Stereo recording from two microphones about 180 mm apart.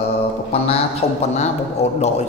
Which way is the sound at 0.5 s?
35° left (ahead or behind).